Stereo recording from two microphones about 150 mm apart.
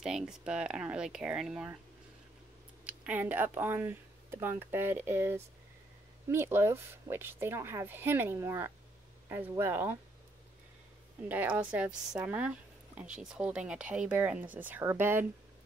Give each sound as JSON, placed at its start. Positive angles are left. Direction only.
{"t": 0.0, "sound": "speech", "side_deg": -5}
{"t": 2.8, "sound": "speech", "side_deg": -10}
{"t": 11.2, "sound": "speech", "side_deg": -10}